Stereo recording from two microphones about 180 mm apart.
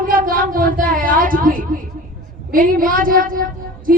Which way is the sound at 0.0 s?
50° right (ahead or behind).